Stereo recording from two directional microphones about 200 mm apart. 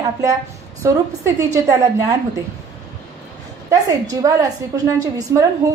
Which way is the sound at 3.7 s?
15° right (ahead or behind).